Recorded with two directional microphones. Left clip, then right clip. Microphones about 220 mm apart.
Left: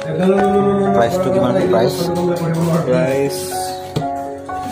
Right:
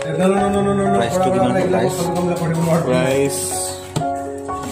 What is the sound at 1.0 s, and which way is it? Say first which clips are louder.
Speech: left 2 dB; centre (ahead or behind).